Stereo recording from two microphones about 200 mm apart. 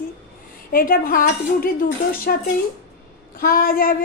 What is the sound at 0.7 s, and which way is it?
A woman's voice, 45° left (ahead or behind).